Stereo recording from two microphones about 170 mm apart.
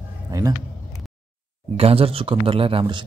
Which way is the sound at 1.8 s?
35° right (ahead or behind).